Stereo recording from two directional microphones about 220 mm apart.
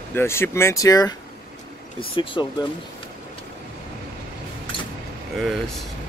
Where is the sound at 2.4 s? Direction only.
20° left (ahead or behind).